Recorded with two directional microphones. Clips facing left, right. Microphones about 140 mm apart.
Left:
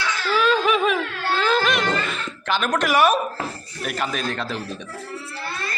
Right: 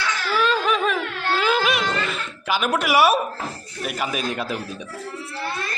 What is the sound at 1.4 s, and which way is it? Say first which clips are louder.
Speech: left 1 dB; 10° right (ahead or behind).